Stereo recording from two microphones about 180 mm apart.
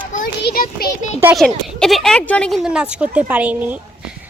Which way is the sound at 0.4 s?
55° left (ahead or behind).